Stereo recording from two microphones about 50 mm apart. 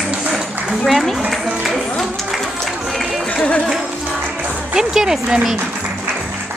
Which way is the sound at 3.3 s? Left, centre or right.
Left.